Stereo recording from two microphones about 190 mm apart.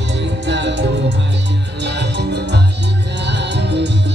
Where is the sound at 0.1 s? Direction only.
70° right (ahead or behind).